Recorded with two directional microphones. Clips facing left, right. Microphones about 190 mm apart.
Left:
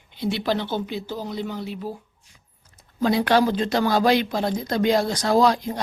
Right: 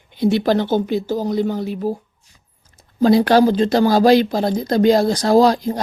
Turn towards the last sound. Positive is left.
turn(degrees=-35)  # may be behind; listen again after turning